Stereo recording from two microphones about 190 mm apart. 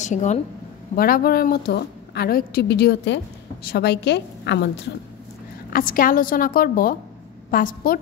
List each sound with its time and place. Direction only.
0.0 s speech: 40° left (ahead or behind)
0.9 s a woman's voice: 50° left (ahead or behind); by 4.8 s 65° left (ahead or behind)
5.7 s a woman's voice: 50° left (ahead or behind)